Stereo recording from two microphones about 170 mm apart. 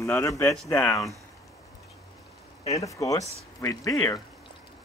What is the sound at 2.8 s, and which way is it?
Speech, 20° left (ahead or behind).